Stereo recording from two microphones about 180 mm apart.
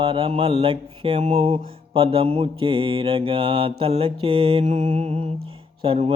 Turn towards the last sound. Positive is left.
turn(degrees=-30)  # may be behind; listen again after turning